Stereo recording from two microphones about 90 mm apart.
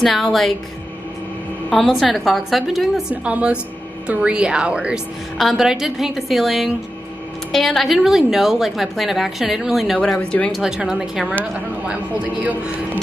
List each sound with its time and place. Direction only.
0.0 s a woman's voice: centre (ahead or behind)
1.7 s a woman's voice: centre (ahead or behind)
5.4 s a woman's voice: centre (ahead or behind)
9.9 s speech: 15° left (ahead or behind)
10.5 s a man's voice: 5° right (ahead or behind)